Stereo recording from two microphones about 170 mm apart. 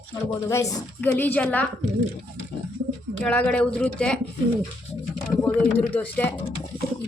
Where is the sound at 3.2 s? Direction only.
5° left (ahead or behind).